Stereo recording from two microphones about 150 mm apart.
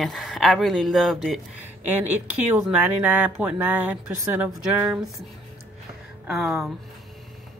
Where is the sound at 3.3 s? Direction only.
5° right (ahead or behind).